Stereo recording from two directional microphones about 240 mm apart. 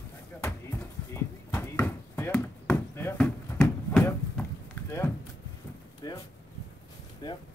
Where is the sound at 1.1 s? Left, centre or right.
Centre.